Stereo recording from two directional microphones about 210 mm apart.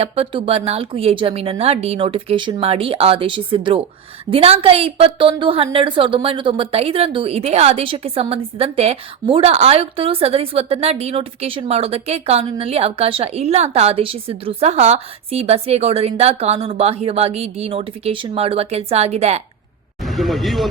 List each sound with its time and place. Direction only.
0.0 s a woman's voice: 30° right (ahead or behind)
20.1 s speech: centre (ahead or behind)